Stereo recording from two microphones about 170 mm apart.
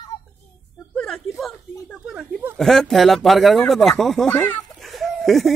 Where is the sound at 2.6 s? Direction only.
5° left (ahead or behind).